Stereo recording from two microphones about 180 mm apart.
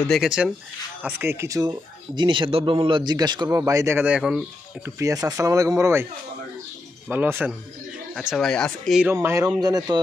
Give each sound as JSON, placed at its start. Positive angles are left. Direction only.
{"t": 0.1, "sound": "speech", "side_deg": -5}
{"t": 4.9, "sound": "speech", "side_deg": -20}
{"t": 7.1, "sound": "speech", "side_deg": -10}
{"t": 9.1, "sound": "speech", "side_deg": -15}